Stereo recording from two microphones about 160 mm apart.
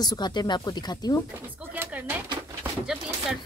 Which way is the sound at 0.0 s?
25° left (ahead or behind).